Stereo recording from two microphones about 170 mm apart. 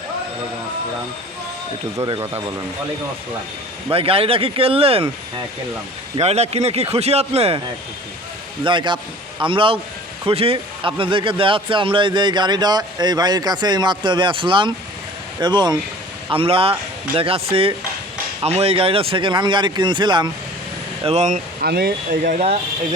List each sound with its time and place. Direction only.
2.0 s a man's voice: 25° right (ahead or behind)
3.9 s speech: 35° right (ahead or behind)
6.1 s speech: 40° right (ahead or behind)
8.6 s a man's voice: 30° right (ahead or behind)
21.0 s speech: 40° right (ahead or behind); by 22.4 s 60° right (ahead or behind)